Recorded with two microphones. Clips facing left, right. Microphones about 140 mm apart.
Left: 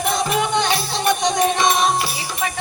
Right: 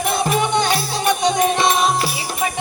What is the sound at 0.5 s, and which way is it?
Music, 10° right (ahead or behind).